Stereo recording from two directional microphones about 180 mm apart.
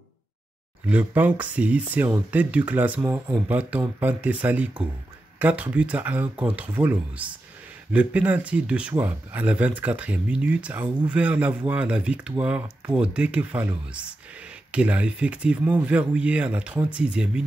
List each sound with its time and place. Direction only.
0.8 s speech: 10° right (ahead or behind)